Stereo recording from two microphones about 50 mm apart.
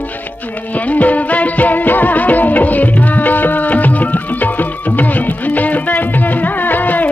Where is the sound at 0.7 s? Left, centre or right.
Left.